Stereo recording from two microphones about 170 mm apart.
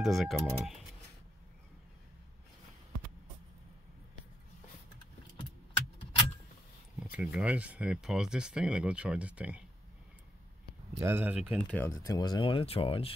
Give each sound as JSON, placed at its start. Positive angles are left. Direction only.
{"t": 0.0, "sound": "speech", "side_deg": 0}
{"t": 7.0, "sound": "speech", "side_deg": -5}
{"t": 11.0, "sound": "speech", "side_deg": -15}
{"t": 11.5, "sound": "speech", "side_deg": 10}